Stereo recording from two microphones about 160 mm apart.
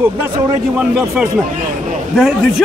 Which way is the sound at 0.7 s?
5° right (ahead or behind).